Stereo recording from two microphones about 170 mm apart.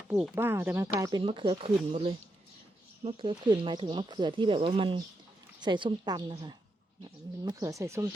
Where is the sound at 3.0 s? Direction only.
30° right (ahead or behind).